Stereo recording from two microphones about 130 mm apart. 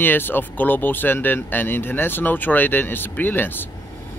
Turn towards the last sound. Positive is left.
turn(degrees=15)  # may be behind; listen again after turning